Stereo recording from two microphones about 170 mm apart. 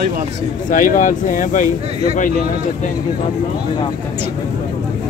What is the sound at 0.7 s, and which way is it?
Speech, 50° left (ahead or behind).